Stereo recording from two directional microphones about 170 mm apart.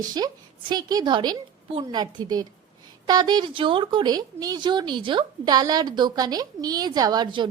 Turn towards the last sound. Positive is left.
turn(degrees=-25)  # may be behind; listen again after turning